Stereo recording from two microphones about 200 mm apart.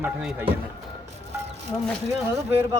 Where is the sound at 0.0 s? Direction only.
5° right (ahead or behind).